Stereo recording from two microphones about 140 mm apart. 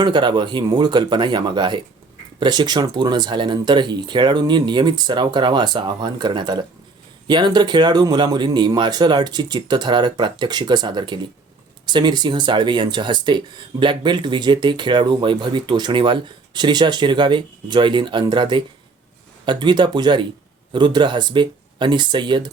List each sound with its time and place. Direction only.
0.0 s speech: 35° right (ahead or behind)